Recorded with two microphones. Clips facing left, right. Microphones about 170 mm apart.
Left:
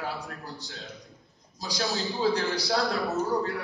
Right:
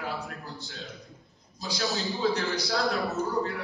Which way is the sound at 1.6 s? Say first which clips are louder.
Even; 35° left (ahead or behind).